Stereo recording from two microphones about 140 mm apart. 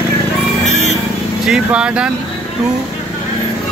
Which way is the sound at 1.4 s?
5° right (ahead or behind).